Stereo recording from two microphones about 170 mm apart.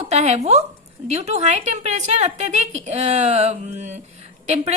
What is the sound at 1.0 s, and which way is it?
A woman's voice, 40° right (ahead or behind).